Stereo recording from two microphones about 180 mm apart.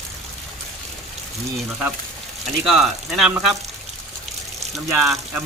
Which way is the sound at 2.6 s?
Centre (ahead or behind).